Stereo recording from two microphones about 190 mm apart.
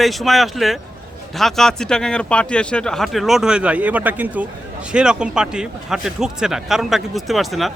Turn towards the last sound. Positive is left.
turn(degrees=0)  # may be behind; listen again after turning